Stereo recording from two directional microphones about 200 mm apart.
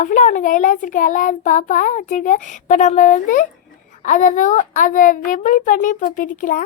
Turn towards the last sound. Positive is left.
turn(degrees=40)  # may be behind; listen again after turning